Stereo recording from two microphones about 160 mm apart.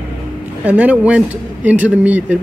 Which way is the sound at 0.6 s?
10° right (ahead or behind).